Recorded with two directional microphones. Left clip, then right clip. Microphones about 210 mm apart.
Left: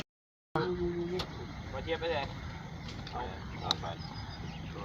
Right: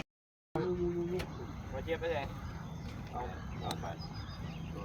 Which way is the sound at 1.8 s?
15° left (ahead or behind).